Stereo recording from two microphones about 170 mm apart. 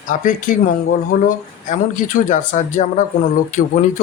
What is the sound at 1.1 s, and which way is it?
Speech, 55° left (ahead or behind).